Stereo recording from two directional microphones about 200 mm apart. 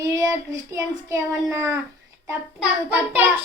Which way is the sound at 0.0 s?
15° right (ahead or behind).